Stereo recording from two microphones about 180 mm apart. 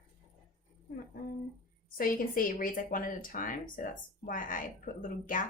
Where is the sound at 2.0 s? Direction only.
50° left (ahead or behind).